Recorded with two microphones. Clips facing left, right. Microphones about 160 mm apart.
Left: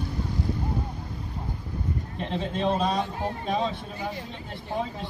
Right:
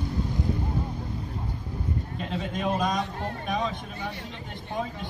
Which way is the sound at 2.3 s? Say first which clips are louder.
Left 2 dB; 25° left (ahead or behind).